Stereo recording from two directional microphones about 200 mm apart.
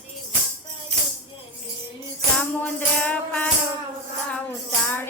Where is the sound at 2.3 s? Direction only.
10° left (ahead or behind).